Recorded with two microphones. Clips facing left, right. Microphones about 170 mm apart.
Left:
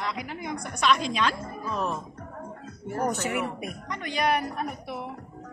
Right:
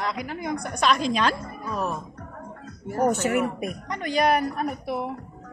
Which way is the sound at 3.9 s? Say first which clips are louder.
Right 4 dB; 35° right (ahead or behind).